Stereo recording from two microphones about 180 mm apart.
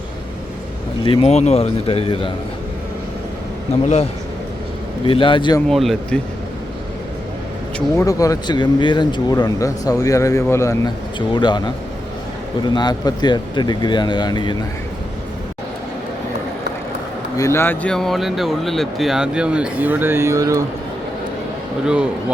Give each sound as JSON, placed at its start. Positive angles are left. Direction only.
{"t": 1.0, "sound": "a man's voice", "side_deg": 30}
{"t": 5.0, "sound": "speech", "side_deg": 30}
{"t": 5.6, "sound": "speech", "side_deg": 0}
{"t": 7.9, "sound": "speech", "side_deg": 20}
{"t": 17.3, "sound": "speech", "side_deg": 15}